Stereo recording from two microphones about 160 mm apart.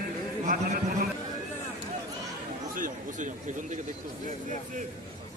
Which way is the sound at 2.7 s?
55° right (ahead or behind).